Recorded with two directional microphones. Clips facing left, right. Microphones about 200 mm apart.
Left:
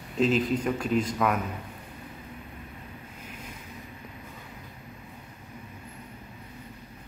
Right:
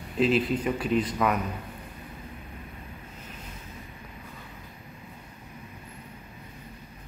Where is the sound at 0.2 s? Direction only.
5° right (ahead or behind).